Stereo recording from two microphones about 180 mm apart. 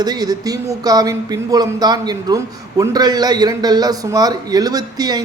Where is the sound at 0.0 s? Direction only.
20° right (ahead or behind).